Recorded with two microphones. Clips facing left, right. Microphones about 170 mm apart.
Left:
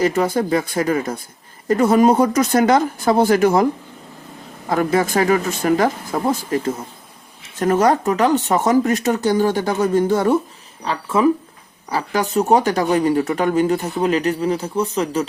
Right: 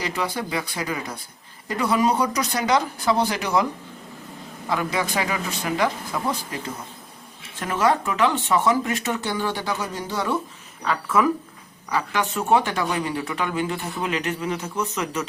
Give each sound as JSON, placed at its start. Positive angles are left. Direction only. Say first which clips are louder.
{"t": 0.0, "sound": "speech", "louder": "left 10 dB", "side_deg": 45}
{"t": 4.7, "sound": "speech", "louder": "left 7 dB", "side_deg": 45}
{"t": 7.6, "sound": "speech", "louder": "left 6 dB", "side_deg": 40}
{"t": 10.8, "sound": "speech", "louder": "left 4 dB", "side_deg": 30}